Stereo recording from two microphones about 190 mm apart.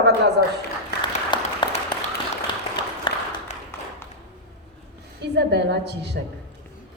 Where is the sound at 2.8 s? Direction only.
25° left (ahead or behind).